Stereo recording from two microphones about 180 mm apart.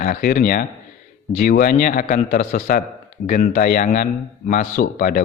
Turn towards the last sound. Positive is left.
turn(degrees=50)  # may be behind; listen again after turning